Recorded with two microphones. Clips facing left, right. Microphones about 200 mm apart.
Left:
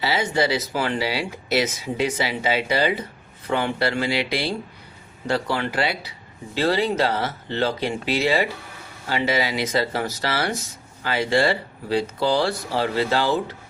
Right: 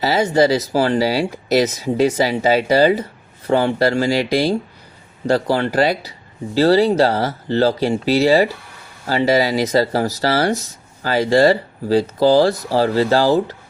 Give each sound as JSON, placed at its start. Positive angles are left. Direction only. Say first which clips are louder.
{"t": 0.0, "sound": "speech", "louder": "right 7 dB", "side_deg": -40}